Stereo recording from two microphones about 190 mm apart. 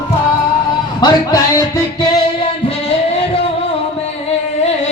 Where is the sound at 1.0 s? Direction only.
20° left (ahead or behind).